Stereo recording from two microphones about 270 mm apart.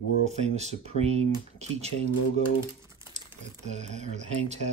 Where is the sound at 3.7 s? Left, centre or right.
Right.